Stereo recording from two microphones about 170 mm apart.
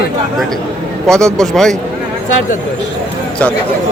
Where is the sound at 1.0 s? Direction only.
5° left (ahead or behind).